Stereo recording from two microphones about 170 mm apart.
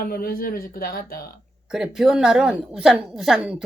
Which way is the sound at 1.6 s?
5° right (ahead or behind).